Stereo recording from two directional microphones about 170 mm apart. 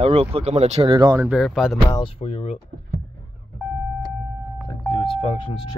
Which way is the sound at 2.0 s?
35° left (ahead or behind).